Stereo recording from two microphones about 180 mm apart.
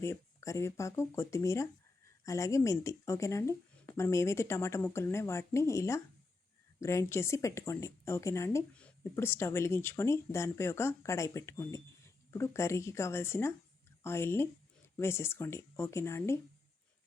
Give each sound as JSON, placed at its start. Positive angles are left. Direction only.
{"t": 0.0, "sound": "speech", "side_deg": 15}